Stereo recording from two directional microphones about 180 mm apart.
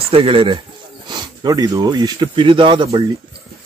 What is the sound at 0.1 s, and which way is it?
Speech, 30° right (ahead or behind).